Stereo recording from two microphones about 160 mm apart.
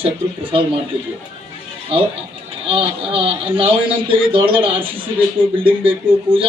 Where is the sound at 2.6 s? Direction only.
35° right (ahead or behind).